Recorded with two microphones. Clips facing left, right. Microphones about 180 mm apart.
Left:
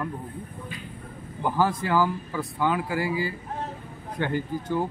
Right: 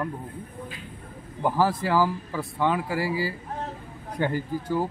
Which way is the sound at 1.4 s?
5° right (ahead or behind).